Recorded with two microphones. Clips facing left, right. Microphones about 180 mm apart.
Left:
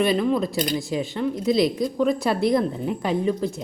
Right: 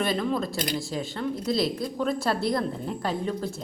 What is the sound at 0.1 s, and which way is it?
Speech, 10° left (ahead or behind).